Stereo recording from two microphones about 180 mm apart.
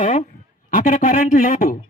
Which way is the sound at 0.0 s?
45° left (ahead or behind).